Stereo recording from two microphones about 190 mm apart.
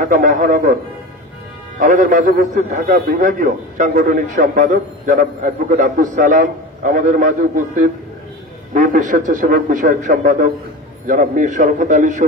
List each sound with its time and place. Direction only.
0.0 s a man's voice: 45° right (ahead or behind)
1.8 s a man's voice: 45° right (ahead or behind)